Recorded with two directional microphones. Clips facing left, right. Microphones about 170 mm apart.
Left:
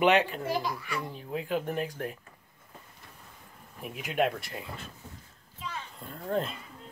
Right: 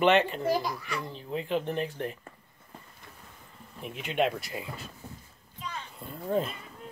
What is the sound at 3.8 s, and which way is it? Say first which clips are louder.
Speech: even; 5° left (ahead or behind).